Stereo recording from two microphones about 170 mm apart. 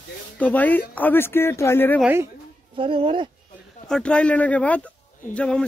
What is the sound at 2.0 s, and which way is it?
Speech, 15° right (ahead or behind).